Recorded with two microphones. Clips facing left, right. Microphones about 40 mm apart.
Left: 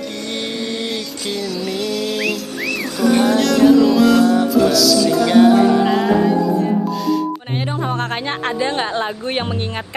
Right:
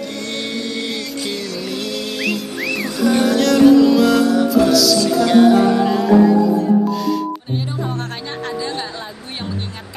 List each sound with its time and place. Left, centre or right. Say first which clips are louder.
0.4 s music: left 1 dB; centre
7.8 s a woman's voice: left 4 dB; left